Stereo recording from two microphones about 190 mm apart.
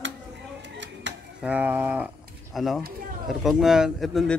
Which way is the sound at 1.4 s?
10° right (ahead or behind).